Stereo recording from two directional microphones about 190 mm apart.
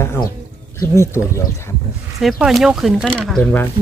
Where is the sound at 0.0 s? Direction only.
15° left (ahead or behind).